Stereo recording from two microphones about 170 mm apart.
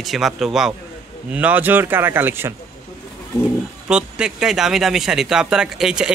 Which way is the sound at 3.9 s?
5° right (ahead or behind).